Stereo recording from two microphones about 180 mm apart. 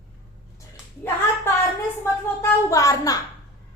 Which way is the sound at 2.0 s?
15° left (ahead or behind).